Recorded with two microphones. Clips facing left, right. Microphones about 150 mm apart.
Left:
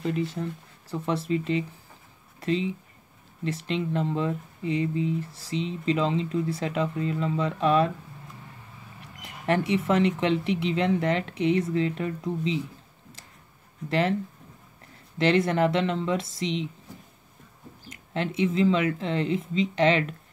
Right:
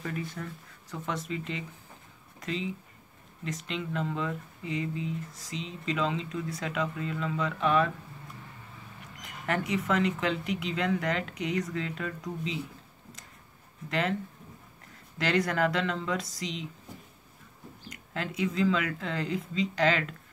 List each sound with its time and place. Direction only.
0.3 s speech: 30° left (ahead or behind)
9.2 s speech: 30° left (ahead or behind)
13.8 s speech: 30° left (ahead or behind)
15.1 s speech: 25° left (ahead or behind)
17.8 s speech: 25° left (ahead or behind)